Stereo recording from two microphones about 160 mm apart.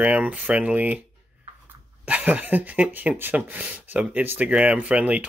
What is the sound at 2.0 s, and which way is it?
Speech, 10° right (ahead or behind).